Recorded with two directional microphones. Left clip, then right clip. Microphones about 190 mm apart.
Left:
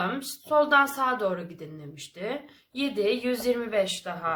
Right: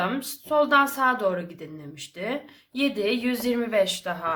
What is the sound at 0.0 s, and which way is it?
Speech, 15° right (ahead or behind).